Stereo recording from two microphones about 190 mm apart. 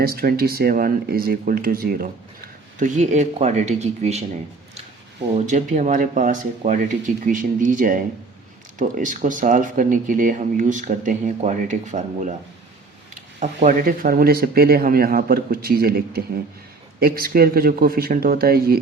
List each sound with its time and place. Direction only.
0.0 s speech: 50° right (ahead or behind); by 4.2 s 35° right (ahead or behind)
5.5 s speech: 40° right (ahead or behind)
13.4 s speech: 40° right (ahead or behind)